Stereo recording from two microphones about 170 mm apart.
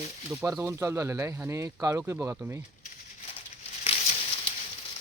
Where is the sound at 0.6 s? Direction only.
15° right (ahead or behind).